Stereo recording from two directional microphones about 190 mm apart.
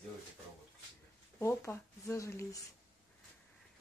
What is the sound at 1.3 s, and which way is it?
Speech, 15° left (ahead or behind).